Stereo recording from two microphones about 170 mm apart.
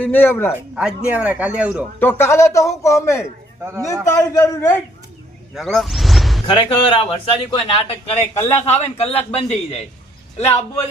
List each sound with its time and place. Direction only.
0.0 s a man's voice: 10° left (ahead or behind)
0.8 s a man's voice: 5° right (ahead or behind)
2.0 s a man's voice: 15° left (ahead or behind)
3.6 s a man's voice: 15° right (ahead or behind)
4.0 s a man's voice: 20° left (ahead or behind)
5.5 s speech: centre (ahead or behind)
6.5 s a man's voice: 30° left (ahead or behind)